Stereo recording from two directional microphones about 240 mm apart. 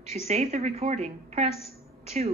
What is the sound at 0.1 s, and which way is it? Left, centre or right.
A woman's voice, right.